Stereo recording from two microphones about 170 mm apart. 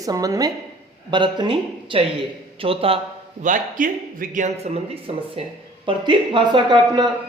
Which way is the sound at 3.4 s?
50° right (ahead or behind).